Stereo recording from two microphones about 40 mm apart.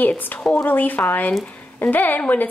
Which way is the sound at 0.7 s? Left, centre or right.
Left.